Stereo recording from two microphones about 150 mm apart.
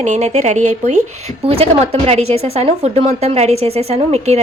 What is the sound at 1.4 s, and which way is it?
A woman's voice, 40° right (ahead or behind).